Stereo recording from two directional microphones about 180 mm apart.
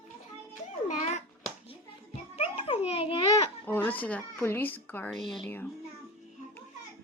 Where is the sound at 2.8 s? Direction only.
30° left (ahead or behind).